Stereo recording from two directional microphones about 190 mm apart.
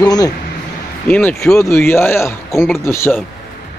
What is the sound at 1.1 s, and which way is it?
Speech, 10° left (ahead or behind).